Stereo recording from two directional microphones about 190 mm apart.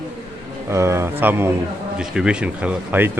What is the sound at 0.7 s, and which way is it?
Speech, 15° right (ahead or behind).